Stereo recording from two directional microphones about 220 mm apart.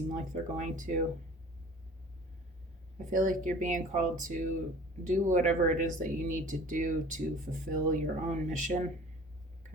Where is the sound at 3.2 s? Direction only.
35° right (ahead or behind).